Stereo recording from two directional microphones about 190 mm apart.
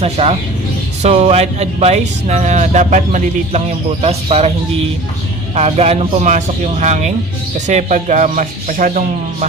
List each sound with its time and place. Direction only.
0.0 s speech: 30° right (ahead or behind)
5.5 s speech: 35° right (ahead or behind)